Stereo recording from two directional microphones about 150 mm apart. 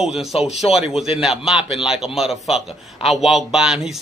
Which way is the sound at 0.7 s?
5° right (ahead or behind).